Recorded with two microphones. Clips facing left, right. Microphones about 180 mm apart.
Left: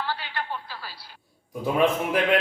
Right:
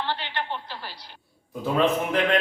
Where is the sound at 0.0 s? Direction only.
20° right (ahead or behind).